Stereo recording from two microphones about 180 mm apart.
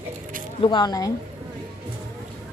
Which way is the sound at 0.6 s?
25° left (ahead or behind).